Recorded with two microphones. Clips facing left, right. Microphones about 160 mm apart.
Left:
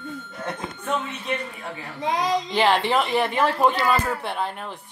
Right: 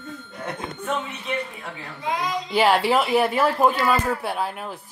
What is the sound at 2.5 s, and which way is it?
Speech, 5° right (ahead or behind).